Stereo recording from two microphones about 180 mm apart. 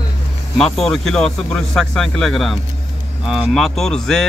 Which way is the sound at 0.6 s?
Centre (ahead or behind).